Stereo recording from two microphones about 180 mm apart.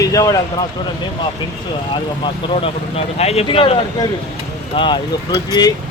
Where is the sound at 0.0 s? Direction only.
20° left (ahead or behind).